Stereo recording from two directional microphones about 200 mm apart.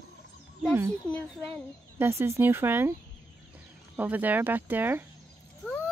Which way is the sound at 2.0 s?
15° right (ahead or behind).